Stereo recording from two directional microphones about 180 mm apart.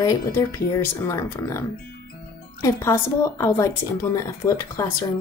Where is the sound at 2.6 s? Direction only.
15° left (ahead or behind).